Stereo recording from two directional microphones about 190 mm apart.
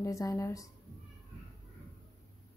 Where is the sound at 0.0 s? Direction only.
15° left (ahead or behind).